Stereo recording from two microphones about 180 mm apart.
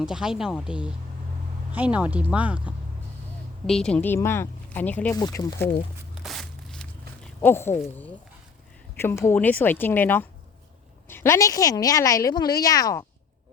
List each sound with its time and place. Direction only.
0.0 s speech: 5° right (ahead or behind)
3.7 s speech: 5° left (ahead or behind)
5.1 s speech: 20° left (ahead or behind)
6.1 s a sound: centre (ahead or behind)
7.4 s speech: 15° left (ahead or behind)
9.0 s a woman's voice: 15° left (ahead or behind)